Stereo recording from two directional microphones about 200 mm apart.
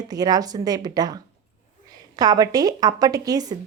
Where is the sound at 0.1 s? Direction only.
20° right (ahead or behind).